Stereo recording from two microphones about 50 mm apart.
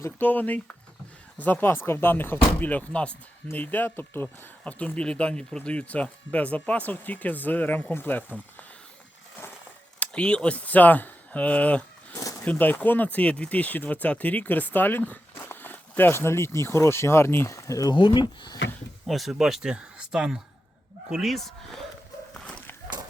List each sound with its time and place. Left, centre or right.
0.2 s speech: left
1.6 s speech: left
2.5 s speech: left
3.5 s speech: left
4.6 s speech: left
10.1 s speech: left
12.1 s a sound: left
12.5 s speech: left
19.0 s speech: centre
19.7 s speech: centre